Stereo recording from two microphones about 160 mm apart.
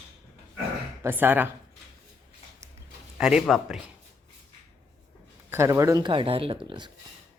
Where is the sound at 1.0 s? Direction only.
10° right (ahead or behind).